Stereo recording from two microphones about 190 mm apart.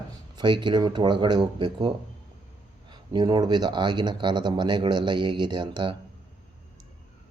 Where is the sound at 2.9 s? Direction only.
25° right (ahead or behind).